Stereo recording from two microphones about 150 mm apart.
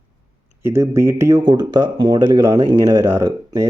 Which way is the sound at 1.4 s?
30° right (ahead or behind).